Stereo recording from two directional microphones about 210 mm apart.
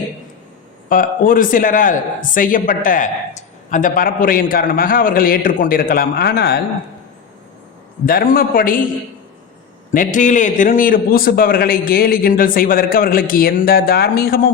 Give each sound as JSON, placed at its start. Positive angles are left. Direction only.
{"t": 0.9, "sound": "a man's voice", "side_deg": 40}
{"t": 8.0, "sound": "a man's voice", "side_deg": 45}
{"t": 9.9, "sound": "a man's voice", "side_deg": 40}